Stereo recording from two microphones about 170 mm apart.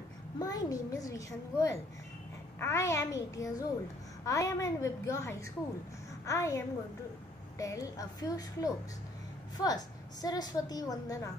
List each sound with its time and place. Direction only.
0.4 s a woman's voice: 20° left (ahead or behind)